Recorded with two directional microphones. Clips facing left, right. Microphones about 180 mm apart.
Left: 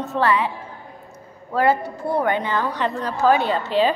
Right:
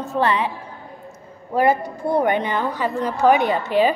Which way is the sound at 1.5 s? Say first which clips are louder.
Right 1 dB; 15° right (ahead or behind).